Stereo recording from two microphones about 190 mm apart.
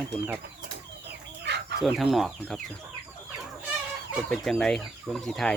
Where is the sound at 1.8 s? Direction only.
Centre (ahead or behind).